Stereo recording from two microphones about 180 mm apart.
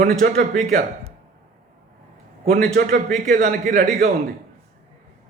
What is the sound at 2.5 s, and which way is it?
A man's voice, 55° right (ahead or behind).